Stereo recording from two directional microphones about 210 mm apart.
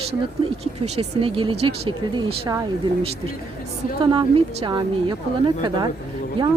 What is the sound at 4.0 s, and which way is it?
Speech, 25° right (ahead or behind).